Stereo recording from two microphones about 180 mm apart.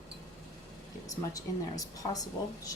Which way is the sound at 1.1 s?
20° left (ahead or behind).